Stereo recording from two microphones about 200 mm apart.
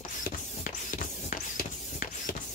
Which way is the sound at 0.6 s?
40° left (ahead or behind).